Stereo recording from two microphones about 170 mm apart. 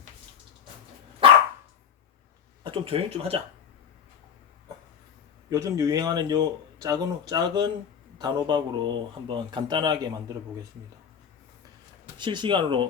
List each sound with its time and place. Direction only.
2.6 s speech: 30° right (ahead or behind)
5.5 s speech: 20° right (ahead or behind)
12.1 s speech: 25° right (ahead or behind)